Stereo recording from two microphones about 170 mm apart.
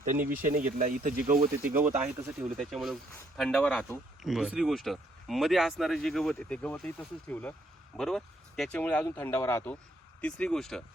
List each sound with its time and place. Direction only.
0.0 s speech: 55° right (ahead or behind)
2.0 s speech: 10° right (ahead or behind)